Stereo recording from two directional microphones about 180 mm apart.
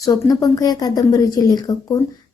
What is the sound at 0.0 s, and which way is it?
A woman's voice, 20° left (ahead or behind).